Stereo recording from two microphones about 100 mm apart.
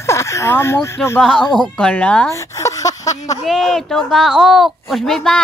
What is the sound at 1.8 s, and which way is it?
Speech, 10° left (ahead or behind).